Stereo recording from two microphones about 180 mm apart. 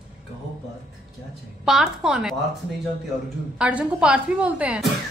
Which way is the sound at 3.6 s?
10° right (ahead or behind).